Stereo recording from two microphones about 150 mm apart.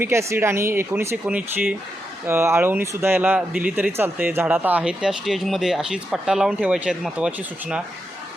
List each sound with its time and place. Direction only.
0.0 s speech: 15° right (ahead or behind)